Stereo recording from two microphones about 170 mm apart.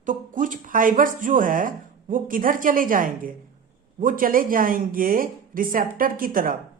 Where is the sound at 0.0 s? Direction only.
50° right (ahead or behind).